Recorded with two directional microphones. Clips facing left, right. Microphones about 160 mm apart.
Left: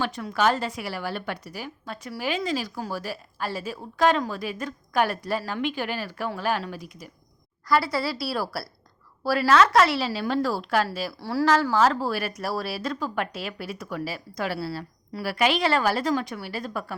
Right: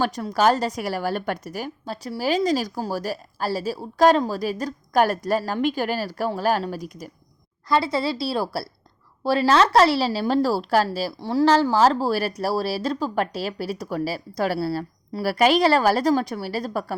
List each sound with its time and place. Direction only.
0.0 s speech: 40° right (ahead or behind)
1.8 s speech: 30° right (ahead or behind)
7.7 s a woman's voice: 25° right (ahead or behind)
11.2 s a woman's voice: 20° right (ahead or behind)
11.4 s speech: 30° right (ahead or behind)